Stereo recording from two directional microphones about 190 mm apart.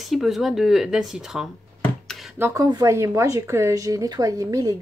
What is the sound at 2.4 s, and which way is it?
Speech, 15° right (ahead or behind).